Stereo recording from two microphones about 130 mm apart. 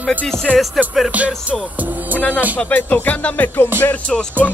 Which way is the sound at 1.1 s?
10° right (ahead or behind).